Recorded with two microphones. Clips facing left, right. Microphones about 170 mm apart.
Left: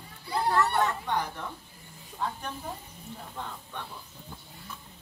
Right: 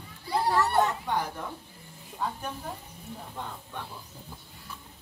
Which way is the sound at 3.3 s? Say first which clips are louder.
Even; 10° right (ahead or behind).